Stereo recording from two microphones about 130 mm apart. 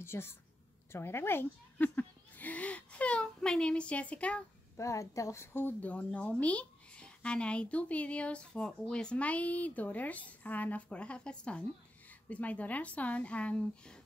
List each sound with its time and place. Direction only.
0.0 s a woman's voice: 20° left (ahead or behind)
4.7 s a child's voice: 25° left (ahead or behind); by 13.9 s 10° left (ahead or behind)